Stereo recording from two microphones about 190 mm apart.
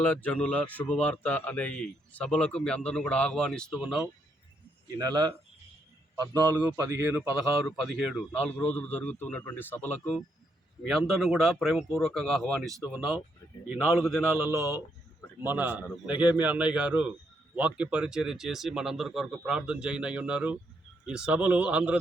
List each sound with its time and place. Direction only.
0.0 s speech: 10° left (ahead or behind)
6.1 s a man's voice: 20° right (ahead or behind)
7.8 s a man's voice: centre (ahead or behind)
14.3 s a man's voice: 10° right (ahead or behind)